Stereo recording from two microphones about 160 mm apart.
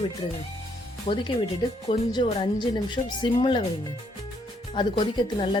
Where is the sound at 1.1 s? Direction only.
50° left (ahead or behind).